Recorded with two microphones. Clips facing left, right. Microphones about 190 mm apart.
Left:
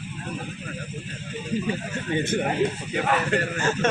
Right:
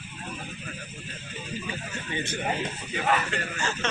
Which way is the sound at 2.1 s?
50° left (ahead or behind).